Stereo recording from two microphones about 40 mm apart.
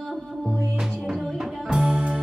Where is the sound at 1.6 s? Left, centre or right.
Centre.